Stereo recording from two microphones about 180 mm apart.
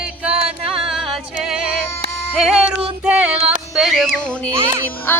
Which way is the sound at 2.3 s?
Centre (ahead or behind).